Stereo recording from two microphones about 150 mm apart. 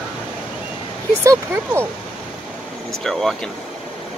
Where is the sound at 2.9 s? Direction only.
Centre (ahead or behind).